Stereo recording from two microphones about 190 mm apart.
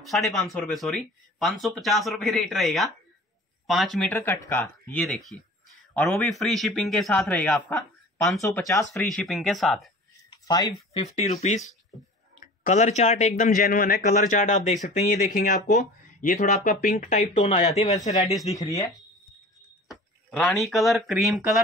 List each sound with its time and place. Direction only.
0.0 s speech: centre (ahead or behind)
4.1 s speech: 15° left (ahead or behind)
8.4 s speech: 15° left (ahead or behind)
9.1 s speech: 5° left (ahead or behind)
10.3 s a sound: 20° left (ahead or behind)
10.9 s speech: 35° left (ahead or behind)
18.3 s speech: centre (ahead or behind)
18.6 s speech: 20° left (ahead or behind)
19.9 s speech: 5° left (ahead or behind)